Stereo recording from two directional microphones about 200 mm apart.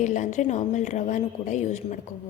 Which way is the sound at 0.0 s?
35° left (ahead or behind).